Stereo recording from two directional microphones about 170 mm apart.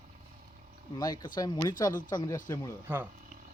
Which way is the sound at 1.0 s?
25° left (ahead or behind).